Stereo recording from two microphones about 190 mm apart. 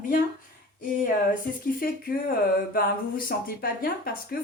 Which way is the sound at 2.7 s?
50° left (ahead or behind).